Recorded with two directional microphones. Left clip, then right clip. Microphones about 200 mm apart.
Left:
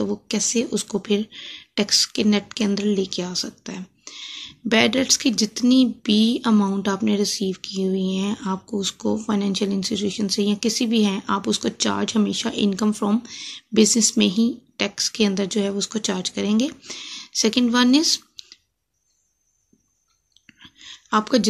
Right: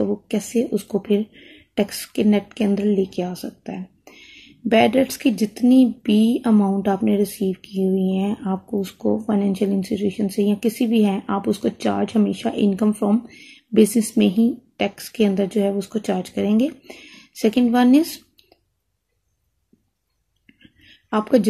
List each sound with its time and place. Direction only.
0.0 s speech: 5° left (ahead or behind)
13.3 s speech: 45° left (ahead or behind)
13.7 s speech: centre (ahead or behind)
17.6 s speech: 5° left (ahead or behind)
20.4 s a sound: 5° left (ahead or behind)